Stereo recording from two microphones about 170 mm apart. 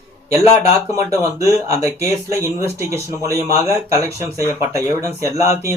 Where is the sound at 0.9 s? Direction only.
15° right (ahead or behind).